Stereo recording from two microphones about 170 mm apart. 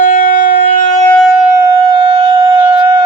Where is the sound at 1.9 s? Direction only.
25° right (ahead or behind).